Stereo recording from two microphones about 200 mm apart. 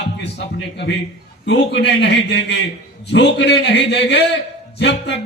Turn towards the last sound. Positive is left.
turn(degrees=60)  # may be behind; listen again after turning